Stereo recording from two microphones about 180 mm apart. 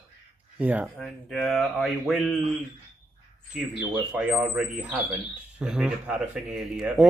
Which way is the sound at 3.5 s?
5° right (ahead or behind).